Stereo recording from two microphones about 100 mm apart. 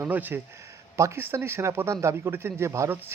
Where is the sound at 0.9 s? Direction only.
30° right (ahead or behind).